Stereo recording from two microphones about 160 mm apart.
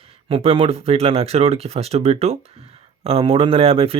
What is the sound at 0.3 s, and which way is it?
Speech, 35° right (ahead or behind).